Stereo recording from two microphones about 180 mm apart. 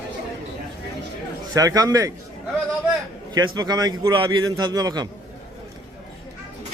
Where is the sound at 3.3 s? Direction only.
20° right (ahead or behind).